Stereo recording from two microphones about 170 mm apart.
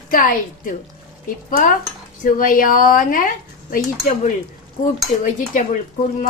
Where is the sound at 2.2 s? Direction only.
55° left (ahead or behind).